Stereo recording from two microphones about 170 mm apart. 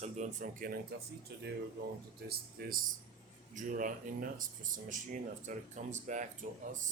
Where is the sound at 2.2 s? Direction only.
60° right (ahead or behind).